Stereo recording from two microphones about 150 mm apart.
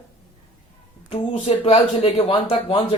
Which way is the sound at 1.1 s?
40° left (ahead or behind).